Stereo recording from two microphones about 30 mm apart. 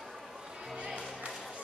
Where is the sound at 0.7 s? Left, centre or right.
Right.